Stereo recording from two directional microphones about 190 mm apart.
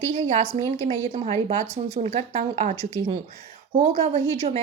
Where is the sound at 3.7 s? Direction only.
35° right (ahead or behind).